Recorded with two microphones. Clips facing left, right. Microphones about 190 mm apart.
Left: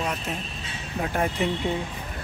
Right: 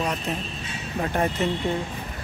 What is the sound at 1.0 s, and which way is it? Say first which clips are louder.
Speech: right 1 dB; centre (ahead or behind).